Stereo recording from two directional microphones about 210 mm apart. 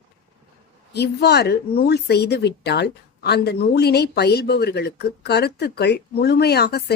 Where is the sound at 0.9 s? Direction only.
50° left (ahead or behind).